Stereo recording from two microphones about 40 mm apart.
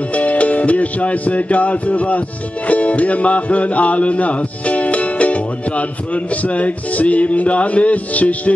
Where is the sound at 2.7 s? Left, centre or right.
Left.